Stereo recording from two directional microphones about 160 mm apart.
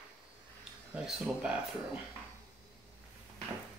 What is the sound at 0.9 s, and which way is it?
Speech, 5° right (ahead or behind).